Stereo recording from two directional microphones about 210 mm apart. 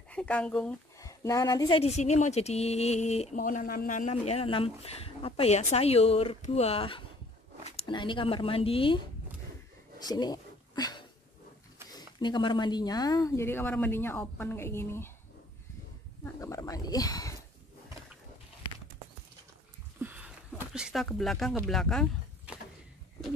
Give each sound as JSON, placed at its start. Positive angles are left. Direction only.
{"t": 0.1, "sound": "speech", "side_deg": 5}
{"t": 1.8, "sound": "speech", "side_deg": 30}
{"t": 9.9, "sound": "a sound", "side_deg": 20}
{"t": 11.9, "sound": "speech", "side_deg": 20}
{"t": 16.3, "sound": "speech", "side_deg": 15}
{"t": 20.0, "sound": "speech", "side_deg": -5}